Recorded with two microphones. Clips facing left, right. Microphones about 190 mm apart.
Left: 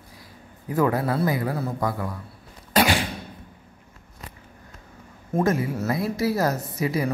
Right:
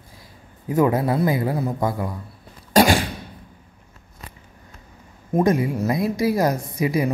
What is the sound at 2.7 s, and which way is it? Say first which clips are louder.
Cough: right 5 dB; 45° right (ahead or behind).